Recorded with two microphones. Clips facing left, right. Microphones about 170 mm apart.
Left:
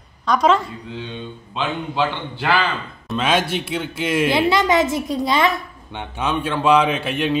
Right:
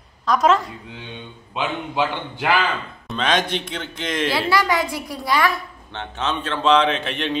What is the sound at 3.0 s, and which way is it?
Speech, 5° left (ahead or behind).